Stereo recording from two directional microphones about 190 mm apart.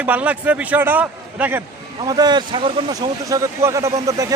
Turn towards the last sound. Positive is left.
turn(degrees=-15)  # may be behind; listen again after turning